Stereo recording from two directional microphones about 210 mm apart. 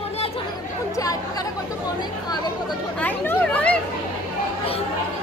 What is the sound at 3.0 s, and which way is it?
Speech, 5° left (ahead or behind).